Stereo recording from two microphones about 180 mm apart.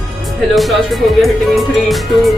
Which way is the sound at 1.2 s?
Centre (ahead or behind).